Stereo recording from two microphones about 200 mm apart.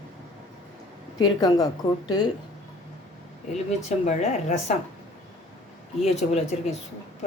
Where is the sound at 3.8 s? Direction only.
35° left (ahead or behind).